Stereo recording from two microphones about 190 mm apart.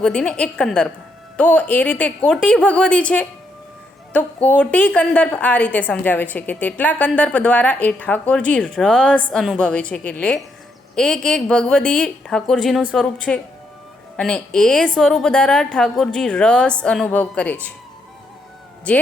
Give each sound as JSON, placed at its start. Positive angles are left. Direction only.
{"t": 0.0, "sound": "a woman's voice", "side_deg": 5}